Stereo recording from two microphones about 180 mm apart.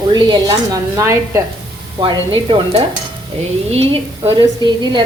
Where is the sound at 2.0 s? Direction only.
25° right (ahead or behind).